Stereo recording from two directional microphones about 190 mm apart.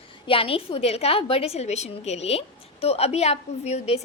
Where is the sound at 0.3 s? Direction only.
30° left (ahead or behind).